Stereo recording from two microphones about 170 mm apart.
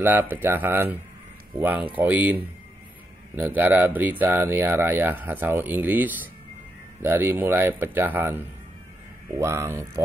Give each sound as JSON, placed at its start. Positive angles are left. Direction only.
{"t": 0.0, "sound": "speech", "side_deg": -10}